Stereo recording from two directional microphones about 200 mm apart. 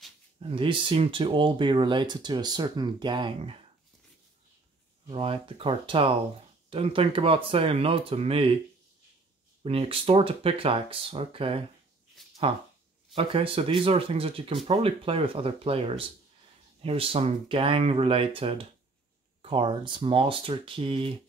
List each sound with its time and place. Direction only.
0.4 s speech: 25° right (ahead or behind)
5.0 s speech: 25° right (ahead or behind)
9.6 s speech: 30° right (ahead or behind)
12.2 s a sound: centre (ahead or behind)
13.1 s speech: 25° right (ahead or behind)